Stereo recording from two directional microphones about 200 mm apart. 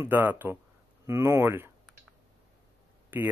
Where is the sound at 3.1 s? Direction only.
10° right (ahead or behind).